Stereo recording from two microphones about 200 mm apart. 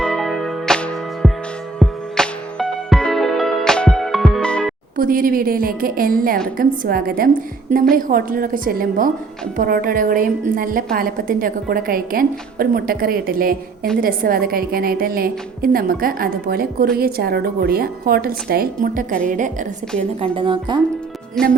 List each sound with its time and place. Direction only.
0.0 s music: centre (ahead or behind)
4.9 s a woman's voice: 45° right (ahead or behind)
20.2 s speech: 25° right (ahead or behind)
21.4 s speech: centre (ahead or behind)